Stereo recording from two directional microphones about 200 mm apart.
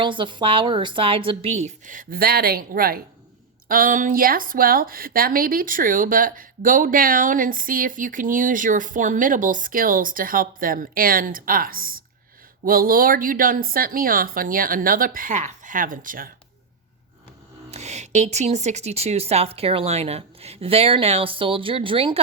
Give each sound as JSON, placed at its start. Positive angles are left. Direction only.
{"t": 0.0, "sound": "a woman's voice", "side_deg": -25}
{"t": 17.7, "sound": "speech", "side_deg": -35}